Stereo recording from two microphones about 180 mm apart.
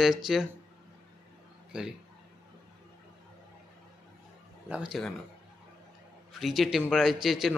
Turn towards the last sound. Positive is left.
turn(degrees=0)  # may be behind; listen again after turning